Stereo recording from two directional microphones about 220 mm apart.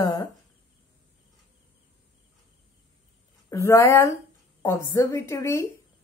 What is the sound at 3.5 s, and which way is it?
A woman's voice, 15° left (ahead or behind).